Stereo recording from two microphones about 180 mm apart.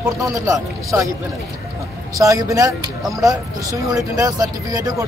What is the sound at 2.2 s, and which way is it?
Speech, 15° right (ahead or behind).